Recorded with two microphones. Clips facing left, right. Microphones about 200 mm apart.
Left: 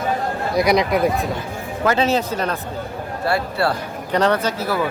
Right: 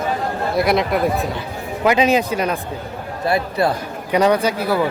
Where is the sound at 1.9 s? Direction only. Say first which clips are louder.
Right 3 dB; 15° right (ahead or behind).